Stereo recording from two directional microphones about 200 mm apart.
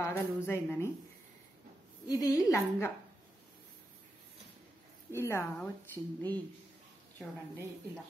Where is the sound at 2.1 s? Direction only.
20° left (ahead or behind).